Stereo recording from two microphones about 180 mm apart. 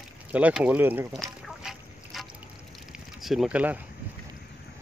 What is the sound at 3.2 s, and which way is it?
Speech, centre (ahead or behind).